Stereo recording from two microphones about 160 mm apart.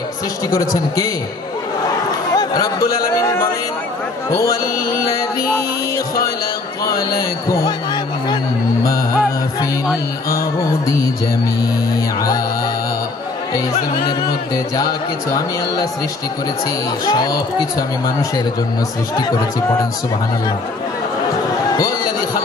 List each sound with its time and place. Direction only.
0.7 s speech: 20° left (ahead or behind)
2.3 s a sound: 25° left (ahead or behind)
3.0 s speech: 20° left (ahead or behind)
7.1 s speech: 20° left (ahead or behind)
14.5 s speech: 25° left (ahead or behind)
17.0 s speech: 25° left (ahead or behind)
21.7 s a sound: 25° left (ahead or behind)